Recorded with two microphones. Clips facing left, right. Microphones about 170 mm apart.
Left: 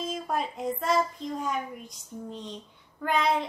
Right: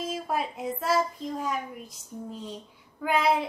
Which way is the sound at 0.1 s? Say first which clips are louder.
Right 1 dB; 5° right (ahead or behind).